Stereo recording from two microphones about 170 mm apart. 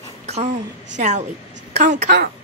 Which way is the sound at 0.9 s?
45° right (ahead or behind).